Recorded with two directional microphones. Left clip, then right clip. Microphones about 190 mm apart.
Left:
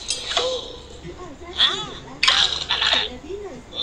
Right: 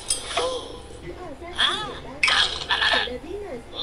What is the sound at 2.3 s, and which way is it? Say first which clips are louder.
Toothbrush: left 2 dB; 20° right (ahead or behind).